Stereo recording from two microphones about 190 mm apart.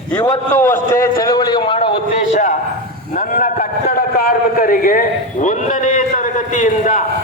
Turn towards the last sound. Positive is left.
turn(degrees=40)  # may be behind; listen again after turning